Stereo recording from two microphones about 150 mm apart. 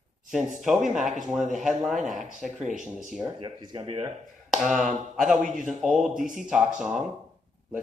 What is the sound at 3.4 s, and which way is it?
Speech, 30° right (ahead or behind).